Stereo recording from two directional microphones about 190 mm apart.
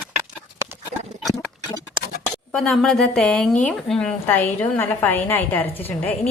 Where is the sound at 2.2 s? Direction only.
5° left (ahead or behind).